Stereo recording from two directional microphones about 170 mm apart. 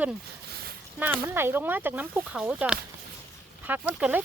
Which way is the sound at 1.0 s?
10° right (ahead or behind).